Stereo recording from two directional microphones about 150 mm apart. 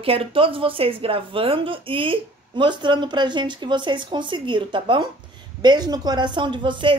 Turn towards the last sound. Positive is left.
turn(degrees=-30)  # may be behind; listen again after turning